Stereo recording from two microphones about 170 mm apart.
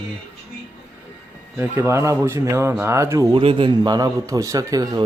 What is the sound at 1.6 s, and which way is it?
Speech, 15° right (ahead or behind).